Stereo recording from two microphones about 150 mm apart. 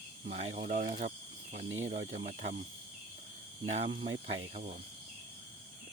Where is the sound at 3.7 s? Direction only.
45° right (ahead or behind).